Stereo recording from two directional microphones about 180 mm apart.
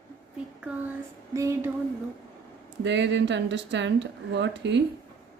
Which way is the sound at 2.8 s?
80° right.